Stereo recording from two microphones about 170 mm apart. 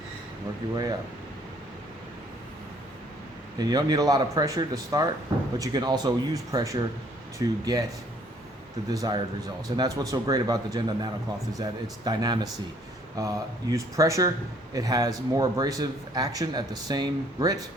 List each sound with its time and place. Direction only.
0.6 s speech: 20° right (ahead or behind)
3.6 s speech: 20° right (ahead or behind)
8.9 s speech: 20° right (ahead or behind)